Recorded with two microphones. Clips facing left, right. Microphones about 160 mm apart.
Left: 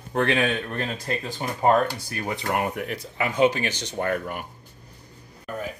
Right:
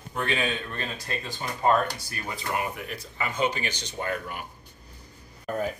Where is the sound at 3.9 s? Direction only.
55° left (ahead or behind).